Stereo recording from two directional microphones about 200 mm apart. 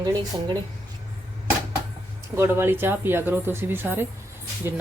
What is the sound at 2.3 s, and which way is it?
Speech, 10° right (ahead or behind).